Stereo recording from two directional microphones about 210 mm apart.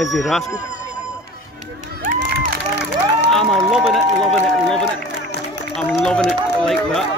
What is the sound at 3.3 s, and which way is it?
Run, centre (ahead or behind).